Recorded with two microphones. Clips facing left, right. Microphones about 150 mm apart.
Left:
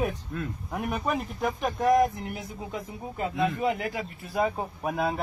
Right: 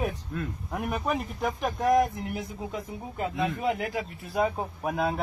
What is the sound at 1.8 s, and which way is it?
Speech, 50° left (ahead or behind).